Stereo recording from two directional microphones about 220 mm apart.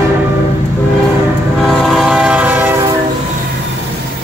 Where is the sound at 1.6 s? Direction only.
Centre (ahead or behind).